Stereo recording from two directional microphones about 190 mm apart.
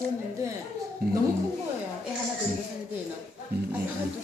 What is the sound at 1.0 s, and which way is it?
Speech, 55° right (ahead or behind).